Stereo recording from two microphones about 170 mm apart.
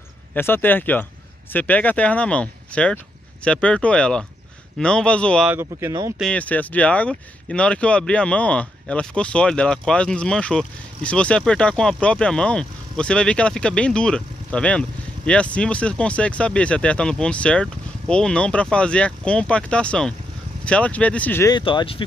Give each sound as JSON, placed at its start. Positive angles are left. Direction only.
{"t": 0.3, "sound": "speech", "side_deg": 10}
{"t": 5.5, "sound": "speech", "side_deg": -15}
{"t": 6.1, "sound": "speech", "side_deg": 5}
{"t": 21.5, "sound": "speech", "side_deg": 30}